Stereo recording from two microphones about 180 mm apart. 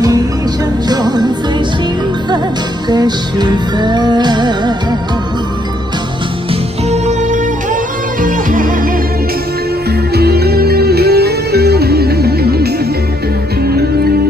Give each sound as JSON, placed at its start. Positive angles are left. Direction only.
{"t": 0.8, "sound": "music", "side_deg": -25}
{"t": 2.9, "sound": "music", "side_deg": -25}
{"t": 6.9, "sound": "music", "side_deg": -40}
{"t": 10.1, "sound": "music", "side_deg": -60}
{"t": 13.7, "sound": "music", "side_deg": -60}